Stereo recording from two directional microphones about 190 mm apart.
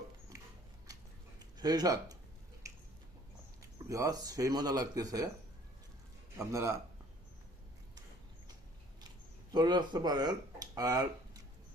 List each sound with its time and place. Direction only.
1.4 s speech: 20° right (ahead or behind)
2.6 s squish: 15° right (ahead or behind)
3.8 s speech: 15° right (ahead or behind)
6.3 s speech: 15° right (ahead or behind)
9.5 s speech: 20° right (ahead or behind)